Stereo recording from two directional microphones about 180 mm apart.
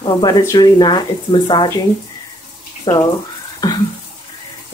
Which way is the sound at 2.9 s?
20° left (ahead or behind).